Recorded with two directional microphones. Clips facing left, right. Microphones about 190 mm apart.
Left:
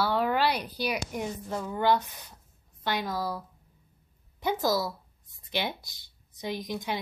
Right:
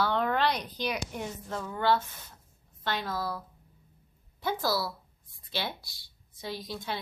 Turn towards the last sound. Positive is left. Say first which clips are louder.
# left 4 dB
turn(degrees=15)  # may be behind; listen again after turning